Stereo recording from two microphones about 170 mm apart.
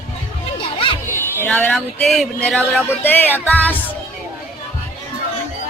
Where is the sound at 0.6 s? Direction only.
30° left (ahead or behind).